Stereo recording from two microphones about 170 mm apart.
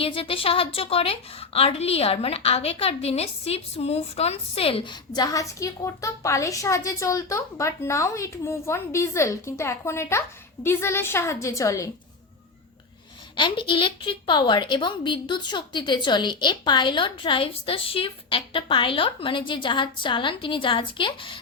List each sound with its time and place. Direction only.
0.0 s a woman's voice: 35° left (ahead or behind)
13.3 s a woman's voice: 30° left (ahead or behind)